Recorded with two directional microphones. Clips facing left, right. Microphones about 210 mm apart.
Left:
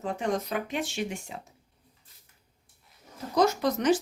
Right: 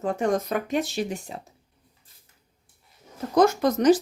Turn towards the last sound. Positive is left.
turn(degrees=-40)  # may be behind; listen again after turning